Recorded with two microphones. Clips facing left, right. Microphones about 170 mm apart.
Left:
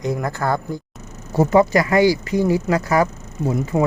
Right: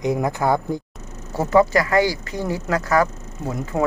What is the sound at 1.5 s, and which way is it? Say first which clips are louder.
Speech: even; 15° left (ahead or behind).